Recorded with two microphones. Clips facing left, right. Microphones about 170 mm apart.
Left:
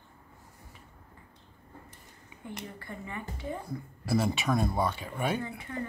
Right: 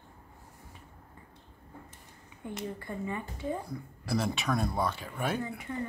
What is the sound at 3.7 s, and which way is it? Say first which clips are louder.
Speech: left 3 dB; centre (ahead or behind).